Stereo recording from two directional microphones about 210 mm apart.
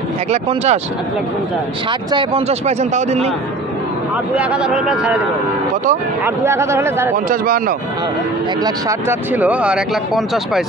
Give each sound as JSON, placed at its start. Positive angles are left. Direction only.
{"t": 0.3, "sound": "speech", "side_deg": -30}
{"t": 1.9, "sound": "speech", "side_deg": -25}
{"t": 4.4, "sound": "speech", "side_deg": -5}
{"t": 6.2, "sound": "speech", "side_deg": -10}
{"t": 7.2, "sound": "speech", "side_deg": -40}
{"t": 8.6, "sound": "speech", "side_deg": -10}